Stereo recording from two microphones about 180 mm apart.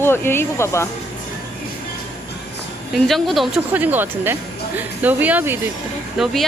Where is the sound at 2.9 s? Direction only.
Centre (ahead or behind).